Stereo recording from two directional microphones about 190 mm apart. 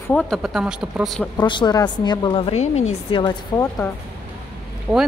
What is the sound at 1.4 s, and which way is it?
A woman's voice, 25° left (ahead or behind).